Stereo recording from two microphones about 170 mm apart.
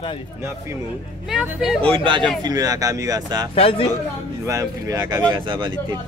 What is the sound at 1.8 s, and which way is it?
Speech, 30° right (ahead or behind).